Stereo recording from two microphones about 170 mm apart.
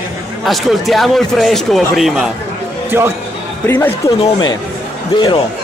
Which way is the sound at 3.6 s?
15° left (ahead or behind).